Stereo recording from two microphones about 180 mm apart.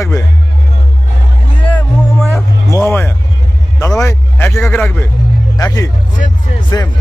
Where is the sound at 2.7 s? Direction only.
15° left (ahead or behind).